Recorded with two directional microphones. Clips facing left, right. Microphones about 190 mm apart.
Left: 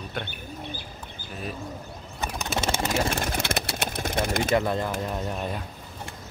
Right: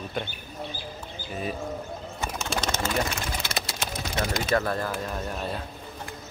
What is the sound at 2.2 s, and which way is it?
Bird, 15° left (ahead or behind).